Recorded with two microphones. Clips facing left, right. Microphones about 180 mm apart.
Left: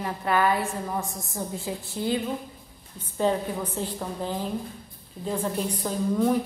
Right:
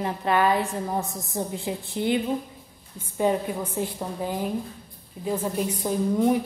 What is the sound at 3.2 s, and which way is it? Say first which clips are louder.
A woman's voice: right 1 dB; 10° right (ahead or behind).